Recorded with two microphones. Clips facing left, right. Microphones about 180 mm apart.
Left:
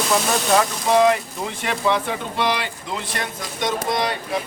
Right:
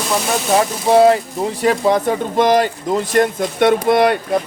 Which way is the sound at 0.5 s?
35° right (ahead or behind).